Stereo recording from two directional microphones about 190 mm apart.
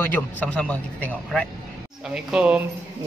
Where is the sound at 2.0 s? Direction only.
5° right (ahead or behind).